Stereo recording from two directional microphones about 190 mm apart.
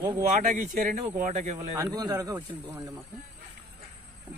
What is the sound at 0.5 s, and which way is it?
Speech, 40° right (ahead or behind).